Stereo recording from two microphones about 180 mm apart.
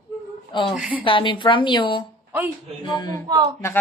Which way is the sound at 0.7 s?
5° right (ahead or behind).